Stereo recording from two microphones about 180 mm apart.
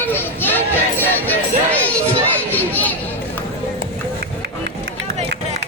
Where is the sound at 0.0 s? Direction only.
10° left (ahead or behind).